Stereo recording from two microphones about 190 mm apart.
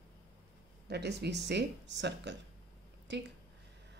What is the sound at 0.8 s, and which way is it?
Speech, 60° right (ahead or behind).